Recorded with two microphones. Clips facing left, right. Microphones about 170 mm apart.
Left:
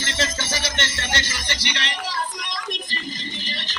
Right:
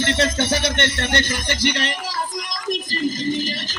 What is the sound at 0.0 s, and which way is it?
Music, 60° right (ahead or behind).